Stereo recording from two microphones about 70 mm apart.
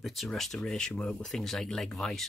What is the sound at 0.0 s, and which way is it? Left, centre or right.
Speech, centre.